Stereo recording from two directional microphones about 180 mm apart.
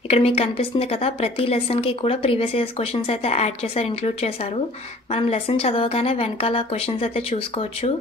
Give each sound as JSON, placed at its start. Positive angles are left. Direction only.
{"t": 0.1, "sound": "a woman's voice", "side_deg": 30}